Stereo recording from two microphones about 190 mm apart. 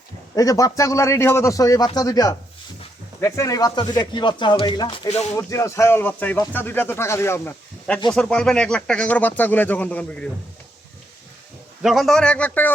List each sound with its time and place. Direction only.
0.3 s speech: 20° left (ahead or behind)
5.4 s speech: 15° left (ahead or behind)
11.8 s a man's voice: centre (ahead or behind)